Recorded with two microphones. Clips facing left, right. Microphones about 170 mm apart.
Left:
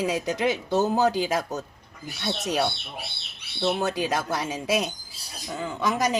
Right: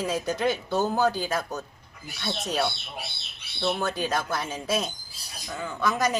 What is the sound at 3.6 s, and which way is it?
Speech, 10° left (ahead or behind).